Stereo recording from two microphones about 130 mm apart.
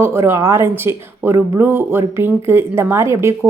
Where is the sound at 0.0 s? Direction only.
20° right (ahead or behind).